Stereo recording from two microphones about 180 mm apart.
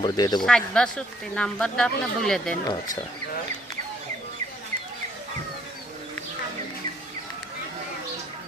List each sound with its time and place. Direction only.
0.0 s speech: 25° left (ahead or behind)
0.4 s speech: 5° left (ahead or behind)